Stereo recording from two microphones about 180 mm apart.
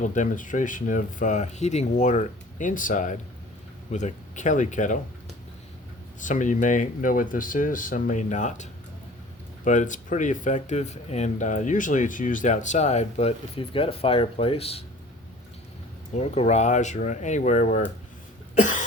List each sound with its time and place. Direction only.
0.0 s speech: 45° left (ahead or behind)
6.1 s speech: 45° left (ahead or behind)
16.1 s speech: 40° left (ahead or behind)
18.5 s cough: 45° left (ahead or behind)